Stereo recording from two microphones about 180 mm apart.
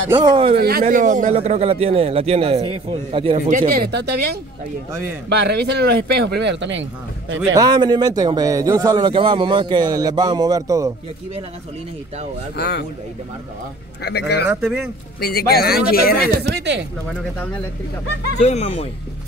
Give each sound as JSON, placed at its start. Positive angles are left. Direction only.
{"t": 0.1, "sound": "a man's voice", "side_deg": -25}
{"t": 0.6, "sound": "speech", "side_deg": -60}
{"t": 0.8, "sound": "a man's voice", "side_deg": -45}
{"t": 3.4, "sound": "speech", "side_deg": -45}
{"t": 7.5, "sound": "a man's voice", "side_deg": -25}
{"t": 12.5, "sound": "a man's voice", "side_deg": 65}
{"t": 14.0, "sound": "speech", "side_deg": 65}
{"t": 14.5, "sound": "speech", "side_deg": -5}
{"t": 15.1, "sound": "a man's voice", "side_deg": 60}
{"t": 16.4, "sound": "speech", "side_deg": -75}
{"t": 18.4, "sound": "speech", "side_deg": 35}